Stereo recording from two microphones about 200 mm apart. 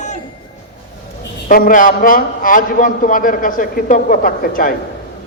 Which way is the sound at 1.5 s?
45° left (ahead or behind).